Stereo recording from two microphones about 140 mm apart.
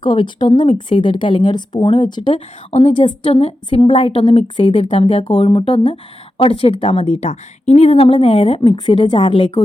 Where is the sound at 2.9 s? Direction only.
35° left (ahead or behind).